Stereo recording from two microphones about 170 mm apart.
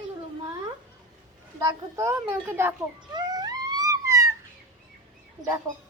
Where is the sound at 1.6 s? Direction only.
15° right (ahead or behind).